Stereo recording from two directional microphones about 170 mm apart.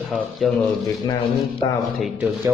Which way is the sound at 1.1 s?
20° left (ahead or behind).